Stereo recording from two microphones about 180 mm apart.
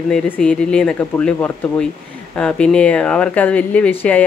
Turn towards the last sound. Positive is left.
turn(degrees=5)  # may be behind; listen again after turning